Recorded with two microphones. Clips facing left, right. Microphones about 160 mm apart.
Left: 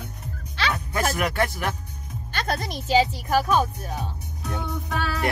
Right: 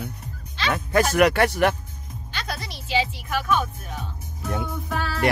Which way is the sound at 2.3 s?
50° left (ahead or behind).